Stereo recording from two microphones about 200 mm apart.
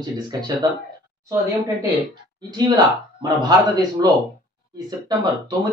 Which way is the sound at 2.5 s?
20° right (ahead or behind).